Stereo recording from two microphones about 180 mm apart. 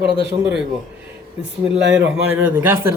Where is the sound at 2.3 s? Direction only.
10° right (ahead or behind).